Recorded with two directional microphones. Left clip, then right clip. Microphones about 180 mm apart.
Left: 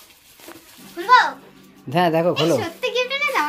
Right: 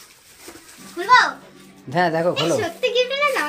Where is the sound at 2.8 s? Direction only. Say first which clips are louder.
Right 2 dB; 20° left (ahead or behind).